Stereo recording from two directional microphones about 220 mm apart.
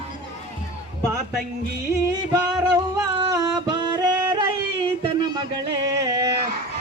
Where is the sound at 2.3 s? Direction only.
15° right (ahead or behind).